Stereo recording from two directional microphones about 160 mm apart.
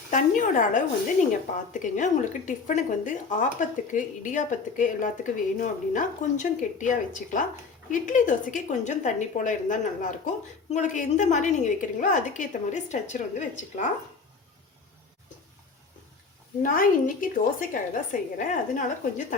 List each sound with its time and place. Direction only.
0.1 s a woman's voice: 55° left (ahead or behind)
16.6 s a woman's voice: 60° left (ahead or behind)